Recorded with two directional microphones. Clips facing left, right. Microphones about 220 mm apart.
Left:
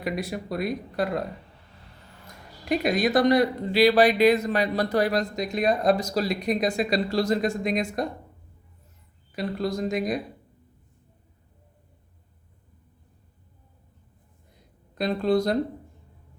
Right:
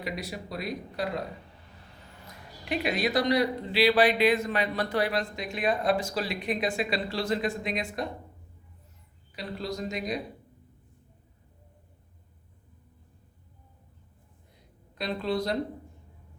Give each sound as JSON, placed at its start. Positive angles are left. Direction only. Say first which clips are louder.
{"t": 0.0, "sound": "speech", "louder": "left 6 dB", "side_deg": 50}
{"t": 2.6, "sound": "speech", "louder": "left 5 dB", "side_deg": 45}
{"t": 9.3, "sound": "speech", "louder": "left 7 dB", "side_deg": 50}
{"t": 14.9, "sound": "speech", "louder": "left 7 dB", "side_deg": 45}